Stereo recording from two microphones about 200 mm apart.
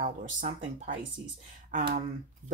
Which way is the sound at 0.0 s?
40° right (ahead or behind).